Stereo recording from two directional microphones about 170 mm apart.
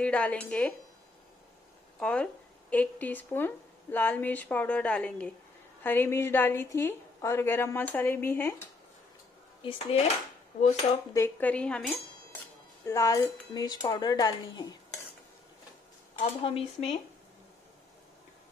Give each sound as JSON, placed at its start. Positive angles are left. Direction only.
{"t": 0.0, "sound": "a woman's voice", "side_deg": 5}
{"t": 2.0, "sound": "a woman's voice", "side_deg": 5}
{"t": 9.6, "sound": "dishes", "side_deg": 35}
{"t": 11.1, "sound": "a woman's voice", "side_deg": 10}
{"t": 12.8, "sound": "a woman's voice", "side_deg": 20}
{"t": 16.2, "sound": "dishes", "side_deg": 35}